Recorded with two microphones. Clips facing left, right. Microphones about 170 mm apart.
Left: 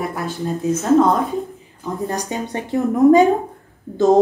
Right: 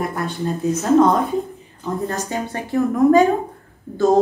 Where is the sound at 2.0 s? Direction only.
15° left (ahead or behind).